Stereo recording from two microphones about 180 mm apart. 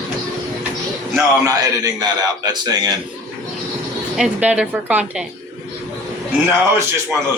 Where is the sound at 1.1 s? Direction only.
20° right (ahead or behind).